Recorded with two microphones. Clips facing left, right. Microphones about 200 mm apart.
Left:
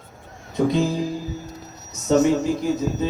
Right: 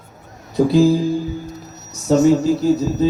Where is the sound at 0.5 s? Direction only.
30° right (ahead or behind).